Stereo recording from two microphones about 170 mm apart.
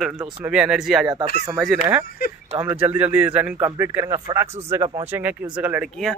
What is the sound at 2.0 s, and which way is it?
Speech, 60° left (ahead or behind).